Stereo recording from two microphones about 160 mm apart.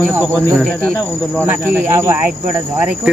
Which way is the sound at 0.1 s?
15° right (ahead or behind).